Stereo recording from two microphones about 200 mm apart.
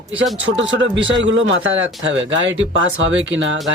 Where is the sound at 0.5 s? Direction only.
65° right (ahead or behind).